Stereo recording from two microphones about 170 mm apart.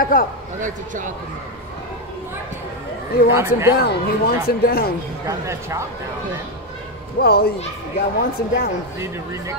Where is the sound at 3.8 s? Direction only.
65° left (ahead or behind).